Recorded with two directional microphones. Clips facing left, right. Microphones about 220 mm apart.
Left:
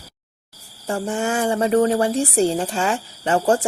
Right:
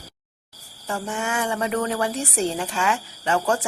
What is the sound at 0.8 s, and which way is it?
Speech, 35° left (ahead or behind).